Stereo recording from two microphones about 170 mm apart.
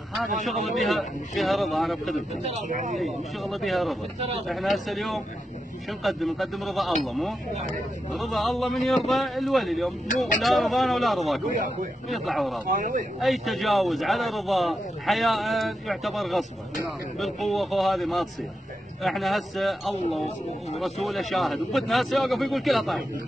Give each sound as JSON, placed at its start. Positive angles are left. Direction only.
{"t": 0.4, "sound": "speech", "side_deg": 0}
{"t": 2.4, "sound": "speech", "side_deg": -45}
{"t": 3.0, "sound": "speech", "side_deg": 0}
{"t": 12.6, "sound": "speech", "side_deg": -50}
{"t": 13.2, "sound": "speech", "side_deg": 0}